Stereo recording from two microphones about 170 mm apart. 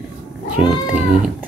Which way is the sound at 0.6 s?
5° right (ahead or behind).